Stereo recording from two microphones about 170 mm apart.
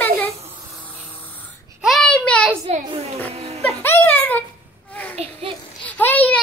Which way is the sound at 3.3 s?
40° right (ahead or behind).